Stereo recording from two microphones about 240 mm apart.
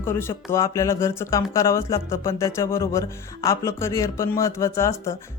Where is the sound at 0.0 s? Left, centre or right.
Centre.